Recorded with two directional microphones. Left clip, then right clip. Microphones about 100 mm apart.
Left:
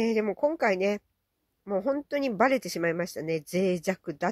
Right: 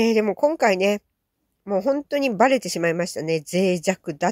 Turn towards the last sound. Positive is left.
turn(degrees=-20)  # may be behind; listen again after turning